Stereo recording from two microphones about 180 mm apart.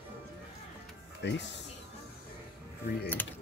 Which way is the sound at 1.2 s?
75° left (ahead or behind).